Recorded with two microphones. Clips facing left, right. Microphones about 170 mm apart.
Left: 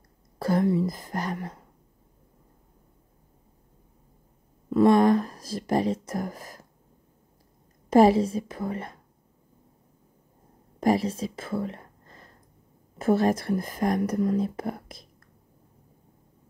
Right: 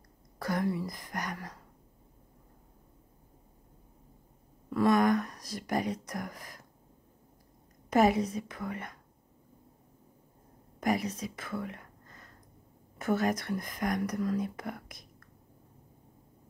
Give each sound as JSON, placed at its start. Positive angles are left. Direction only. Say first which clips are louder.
{"t": 0.4, "sound": "speech", "louder": "left 8 dB", "side_deg": 30}
{"t": 4.6, "sound": "speech", "louder": "left 6 dB", "side_deg": 25}
{"t": 7.9, "sound": "speech", "louder": "left 7 dB", "side_deg": 30}
{"t": 10.8, "sound": "whispering", "louder": "left 7 dB", "side_deg": 30}
{"t": 13.0, "sound": "speech", "louder": "left 7 dB", "side_deg": 30}